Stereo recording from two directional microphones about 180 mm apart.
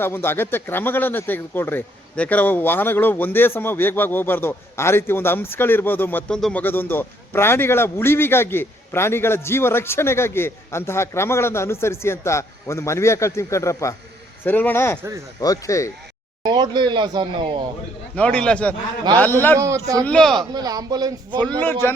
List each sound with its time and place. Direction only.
0.0 s speech: 10° left (ahead or behind)
16.4 s speech: 25° right (ahead or behind)
18.1 s speech: 5° left (ahead or behind)
19.5 s speech: 15° right (ahead or behind)
20.1 s speech: 5° left (ahead or behind)
20.4 s speech: 20° right (ahead or behind)
21.6 s speech: 10° left (ahead or behind)